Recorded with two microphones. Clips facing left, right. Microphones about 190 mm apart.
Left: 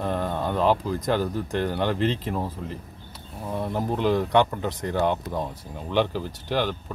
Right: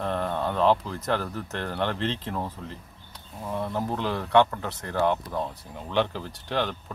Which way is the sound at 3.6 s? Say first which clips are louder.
Left 5 dB; 15° left (ahead or behind).